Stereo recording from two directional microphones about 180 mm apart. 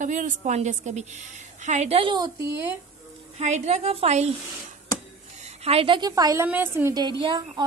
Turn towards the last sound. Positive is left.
turn(degrees=-25)  # may be behind; listen again after turning